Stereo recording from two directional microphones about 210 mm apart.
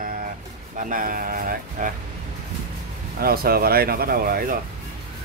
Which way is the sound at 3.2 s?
45° right (ahead or behind).